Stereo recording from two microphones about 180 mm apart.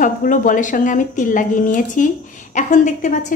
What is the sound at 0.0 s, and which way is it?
A woman's voice, 45° left (ahead or behind).